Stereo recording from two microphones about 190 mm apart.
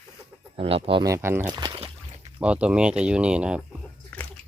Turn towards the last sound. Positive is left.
turn(degrees=5)  # may be behind; listen again after turning